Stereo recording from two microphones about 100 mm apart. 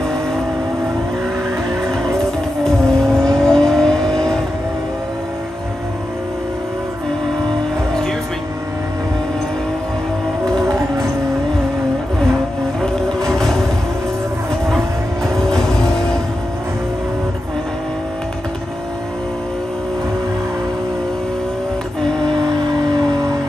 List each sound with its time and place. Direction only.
2.6 s vehicle: 5° left (ahead or behind)
12.8 s music: 5° left (ahead or behind)